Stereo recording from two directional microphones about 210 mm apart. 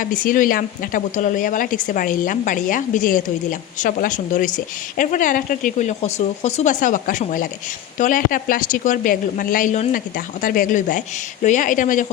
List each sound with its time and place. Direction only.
0.0 s speech: 40° left (ahead or behind)